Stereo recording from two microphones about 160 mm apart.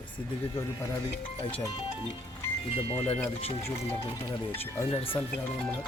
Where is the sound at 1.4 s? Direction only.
35° left (ahead or behind).